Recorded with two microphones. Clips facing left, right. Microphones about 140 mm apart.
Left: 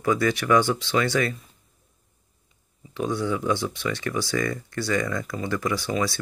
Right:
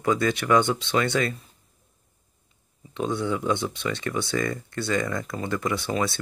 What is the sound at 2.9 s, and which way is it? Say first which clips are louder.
Speech: even; 20° right (ahead or behind).